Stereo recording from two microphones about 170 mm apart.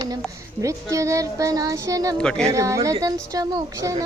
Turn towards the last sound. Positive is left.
turn(degrees=-20)  # may be behind; listen again after turning